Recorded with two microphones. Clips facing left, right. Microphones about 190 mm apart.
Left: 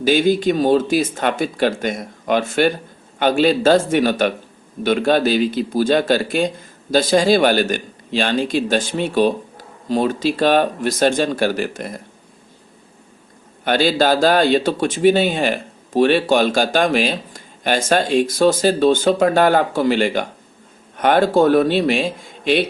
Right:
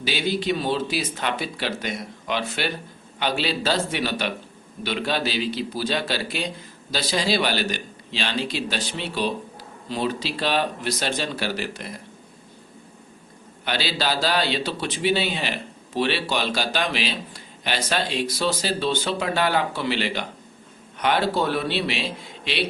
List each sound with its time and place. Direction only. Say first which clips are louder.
0.0 s speech: left 10 dB; 50° left (ahead or behind)
13.7 s speech: left 10 dB; 50° left (ahead or behind)